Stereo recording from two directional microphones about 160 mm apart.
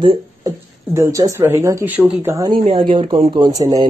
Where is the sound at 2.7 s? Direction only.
30° right (ahead or behind).